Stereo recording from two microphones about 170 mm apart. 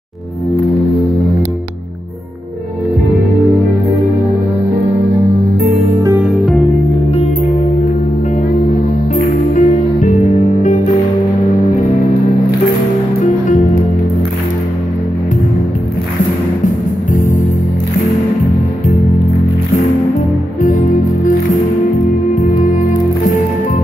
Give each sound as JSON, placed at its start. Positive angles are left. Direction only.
{"t": 6.3, "sound": "music", "side_deg": 5}
{"t": 9.6, "sound": "music", "side_deg": 50}
{"t": 16.6, "sound": "music", "side_deg": 50}